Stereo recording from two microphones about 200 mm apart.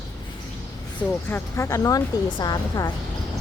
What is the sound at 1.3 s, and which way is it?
A woman's voice, 15° left (ahead or behind).